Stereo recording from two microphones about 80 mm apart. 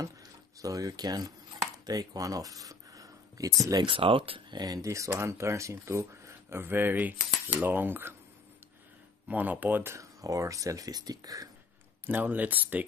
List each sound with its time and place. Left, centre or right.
0.0 s speech: right
3.7 s speech: right
4.6 s speech: right
9.3 s speech: right
9.9 s speech: right
12.1 s speech: right